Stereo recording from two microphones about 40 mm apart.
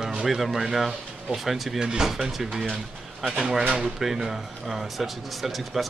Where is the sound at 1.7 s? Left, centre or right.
Centre.